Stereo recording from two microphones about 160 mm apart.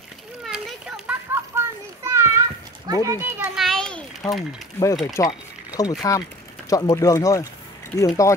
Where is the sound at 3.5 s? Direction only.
Centre (ahead or behind).